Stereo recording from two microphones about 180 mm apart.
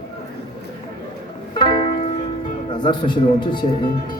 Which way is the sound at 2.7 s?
25° left (ahead or behind).